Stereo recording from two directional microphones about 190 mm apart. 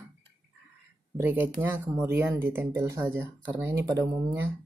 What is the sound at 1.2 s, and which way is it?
Speech, 10° right (ahead or behind).